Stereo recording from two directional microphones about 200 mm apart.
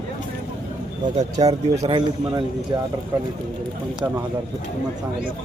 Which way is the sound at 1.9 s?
20° right (ahead or behind).